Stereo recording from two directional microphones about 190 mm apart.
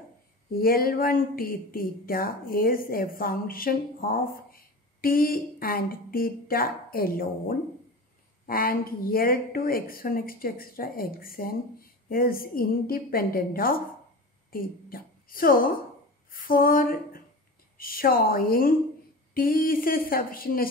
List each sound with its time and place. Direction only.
0.6 s a woman's voice: 50° left (ahead or behind)
16.3 s a sound: 50° left (ahead or behind)
17.7 s speech: 50° left (ahead or behind)